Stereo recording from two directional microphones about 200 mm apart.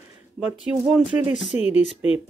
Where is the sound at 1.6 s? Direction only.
30° left (ahead or behind).